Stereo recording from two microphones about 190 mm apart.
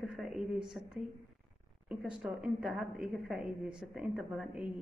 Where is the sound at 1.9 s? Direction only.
5° right (ahead or behind).